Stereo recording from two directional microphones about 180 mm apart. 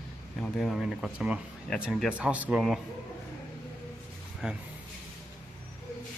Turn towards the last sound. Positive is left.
turn(degrees=-5)  # may be behind; listen again after turning